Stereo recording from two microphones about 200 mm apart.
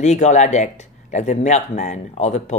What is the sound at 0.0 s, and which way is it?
Speech, 35° left (ahead or behind).